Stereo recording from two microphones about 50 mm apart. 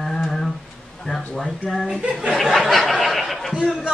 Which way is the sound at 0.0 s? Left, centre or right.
Centre.